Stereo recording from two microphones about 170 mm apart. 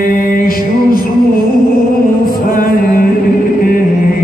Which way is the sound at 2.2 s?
55° left (ahead or behind).